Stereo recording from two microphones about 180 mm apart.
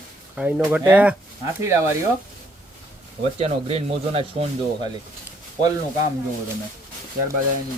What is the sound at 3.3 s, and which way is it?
Speech, 35° right (ahead or behind).